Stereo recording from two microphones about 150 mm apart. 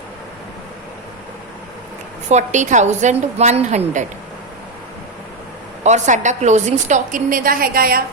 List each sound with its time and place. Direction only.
2.3 s a woman's voice: 55° right (ahead or behind)
5.8 s a woman's voice: 50° right (ahead or behind); by 8.0 s 75° right (ahead or behind)